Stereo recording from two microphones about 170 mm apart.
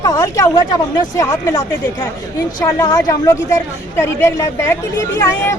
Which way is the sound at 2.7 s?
20° left (ahead or behind).